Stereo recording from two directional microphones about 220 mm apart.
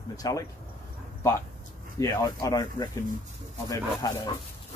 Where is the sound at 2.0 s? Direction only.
15° left (ahead or behind).